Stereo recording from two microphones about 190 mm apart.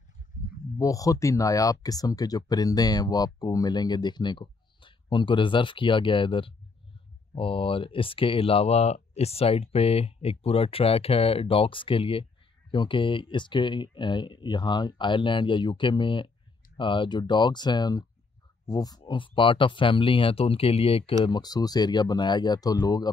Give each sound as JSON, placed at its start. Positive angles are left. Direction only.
{"t": 0.7, "sound": "speech", "side_deg": 20}